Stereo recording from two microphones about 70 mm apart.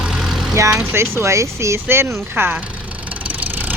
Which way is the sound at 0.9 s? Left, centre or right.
Right.